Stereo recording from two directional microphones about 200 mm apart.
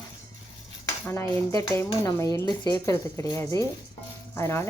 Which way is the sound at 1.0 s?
15° left (ahead or behind).